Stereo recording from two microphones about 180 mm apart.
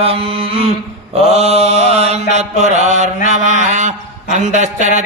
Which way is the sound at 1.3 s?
35° right (ahead or behind).